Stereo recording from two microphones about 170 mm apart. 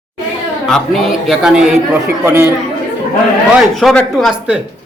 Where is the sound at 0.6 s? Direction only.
Centre (ahead or behind).